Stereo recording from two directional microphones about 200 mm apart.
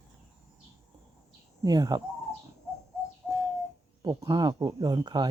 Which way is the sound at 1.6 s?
20° right (ahead or behind).